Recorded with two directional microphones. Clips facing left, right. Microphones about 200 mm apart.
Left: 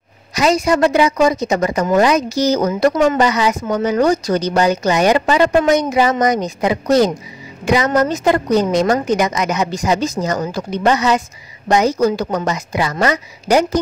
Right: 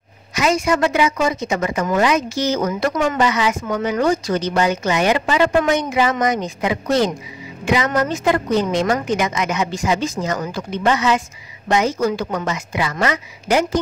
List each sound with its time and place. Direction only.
0.3 s a woman's voice: 35° left (ahead or behind)